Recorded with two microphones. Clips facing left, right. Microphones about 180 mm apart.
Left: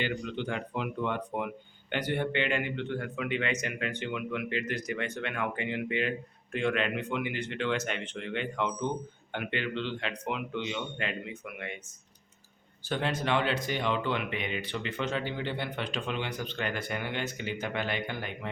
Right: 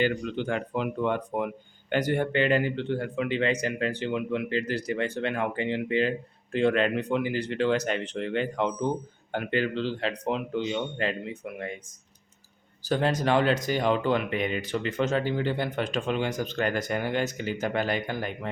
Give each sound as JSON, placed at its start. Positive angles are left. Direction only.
{"t": 0.0, "sound": "a man's voice", "side_deg": -45}
{"t": 12.8, "sound": "a man's voice", "side_deg": -40}